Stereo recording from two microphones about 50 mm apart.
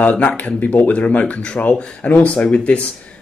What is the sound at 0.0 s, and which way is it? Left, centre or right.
Speech, left.